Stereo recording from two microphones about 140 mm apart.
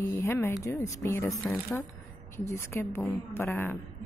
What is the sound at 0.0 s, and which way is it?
A woman's voice, 15° left (ahead or behind).